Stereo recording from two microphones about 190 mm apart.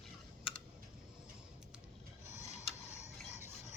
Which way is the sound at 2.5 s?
35° left (ahead or behind).